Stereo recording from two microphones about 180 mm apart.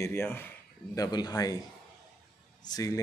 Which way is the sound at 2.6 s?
20° left (ahead or behind).